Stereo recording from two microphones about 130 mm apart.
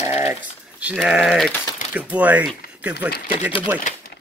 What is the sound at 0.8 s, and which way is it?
Speech, 5° right (ahead or behind).